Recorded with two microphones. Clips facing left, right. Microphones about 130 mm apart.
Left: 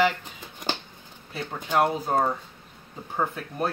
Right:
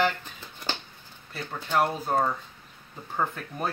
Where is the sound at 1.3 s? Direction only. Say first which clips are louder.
Left 2 dB; 15° left (ahead or behind).